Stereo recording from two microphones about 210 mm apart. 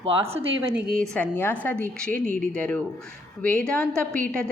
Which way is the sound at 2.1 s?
40° right (ahead or behind).